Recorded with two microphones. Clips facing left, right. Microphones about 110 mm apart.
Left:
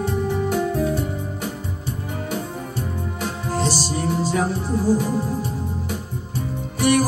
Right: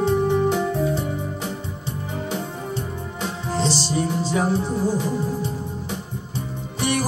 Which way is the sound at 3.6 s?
10° left (ahead or behind).